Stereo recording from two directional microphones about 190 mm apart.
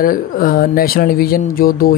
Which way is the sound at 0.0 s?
50° left (ahead or behind).